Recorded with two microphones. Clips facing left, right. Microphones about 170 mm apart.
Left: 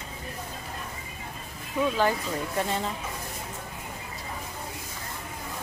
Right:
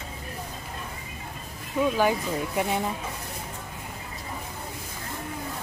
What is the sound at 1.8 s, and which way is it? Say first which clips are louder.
Speech: right 2 dB; 10° right (ahead or behind).